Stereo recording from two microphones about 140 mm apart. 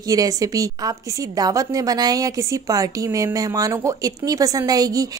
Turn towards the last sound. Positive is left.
turn(degrees=-25)  # may be behind; listen again after turning